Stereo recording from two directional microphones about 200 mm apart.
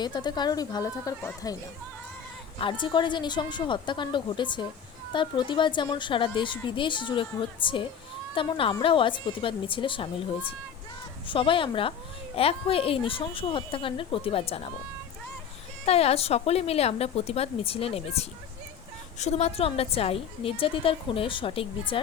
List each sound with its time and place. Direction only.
0.0 s a woman's voice: 20° left (ahead or behind)
2.6 s a woman's voice: 25° left (ahead or behind)
11.3 s a woman's voice: 25° left (ahead or behind)
15.9 s a woman's voice: 30° left (ahead or behind)